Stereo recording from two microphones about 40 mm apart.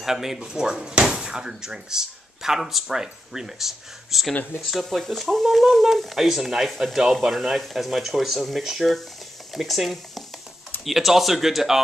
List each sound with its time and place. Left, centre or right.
0.0 s speech: centre